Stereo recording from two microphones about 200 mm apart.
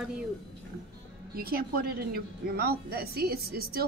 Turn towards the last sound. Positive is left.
turn(degrees=-50)  # may be behind; listen again after turning